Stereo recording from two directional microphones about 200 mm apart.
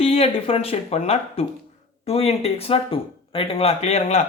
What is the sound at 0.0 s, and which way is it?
Speech, 30° left (ahead or behind).